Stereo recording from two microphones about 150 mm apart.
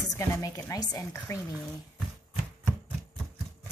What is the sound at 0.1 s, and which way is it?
Speech, 20° left (ahead or behind).